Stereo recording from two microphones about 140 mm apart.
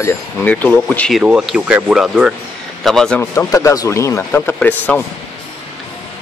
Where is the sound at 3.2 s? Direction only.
20° left (ahead or behind).